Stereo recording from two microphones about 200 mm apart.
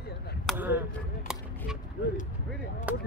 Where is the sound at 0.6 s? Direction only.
10° right (ahead or behind).